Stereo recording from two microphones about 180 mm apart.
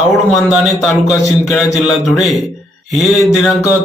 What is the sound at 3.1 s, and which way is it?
Speech, 15° left (ahead or behind).